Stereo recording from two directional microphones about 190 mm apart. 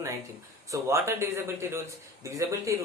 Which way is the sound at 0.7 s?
15° right (ahead or behind).